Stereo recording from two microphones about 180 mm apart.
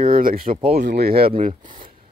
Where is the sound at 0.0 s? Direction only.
50° right (ahead or behind).